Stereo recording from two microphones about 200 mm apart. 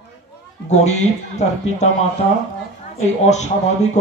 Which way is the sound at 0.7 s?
35° left (ahead or behind).